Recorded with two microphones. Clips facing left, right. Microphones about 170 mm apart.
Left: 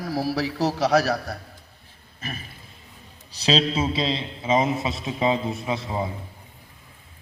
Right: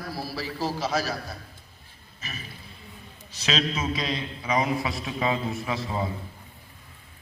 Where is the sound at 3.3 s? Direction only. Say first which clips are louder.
Left 5 dB; 35° left (ahead or behind).